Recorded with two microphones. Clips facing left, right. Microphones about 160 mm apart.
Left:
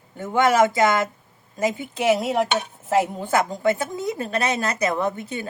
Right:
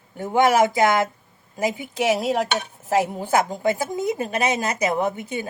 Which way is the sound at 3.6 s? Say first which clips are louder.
Even; 15° right (ahead or behind).